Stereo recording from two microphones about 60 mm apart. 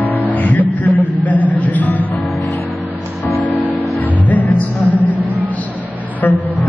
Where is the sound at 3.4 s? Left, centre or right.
Left.